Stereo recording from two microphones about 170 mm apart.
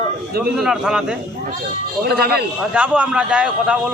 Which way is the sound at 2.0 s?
65° right (ahead or behind).